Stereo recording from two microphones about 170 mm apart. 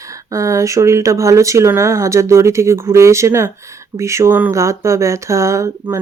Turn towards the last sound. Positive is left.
turn(degrees=-15)  # may be behind; listen again after turning